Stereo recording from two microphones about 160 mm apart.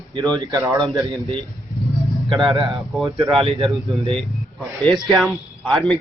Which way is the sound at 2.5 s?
30° right (ahead or behind).